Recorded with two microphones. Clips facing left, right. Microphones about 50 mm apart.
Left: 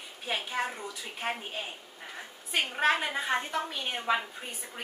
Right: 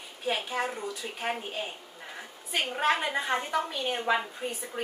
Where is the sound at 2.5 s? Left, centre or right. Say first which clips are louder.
Even; centre.